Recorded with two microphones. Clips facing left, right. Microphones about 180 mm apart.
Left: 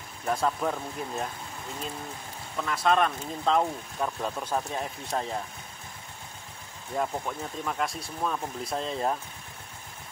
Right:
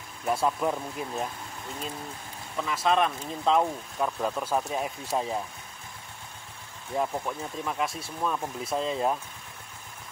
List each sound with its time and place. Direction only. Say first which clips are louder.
0.3 s speech: right 1 dB; 5° right (ahead or behind)
2.6 s speech: even; centre (ahead or behind)
7.0 s speech: right 1 dB; centre (ahead or behind)